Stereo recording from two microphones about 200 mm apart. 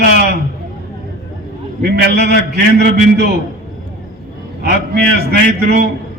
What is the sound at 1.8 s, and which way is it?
Speech, 50° right (ahead or behind).